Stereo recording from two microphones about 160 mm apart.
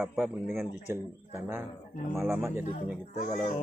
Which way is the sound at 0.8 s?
15° right (ahead or behind).